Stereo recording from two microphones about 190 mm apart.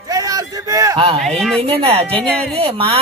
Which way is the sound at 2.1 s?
5° left (ahead or behind).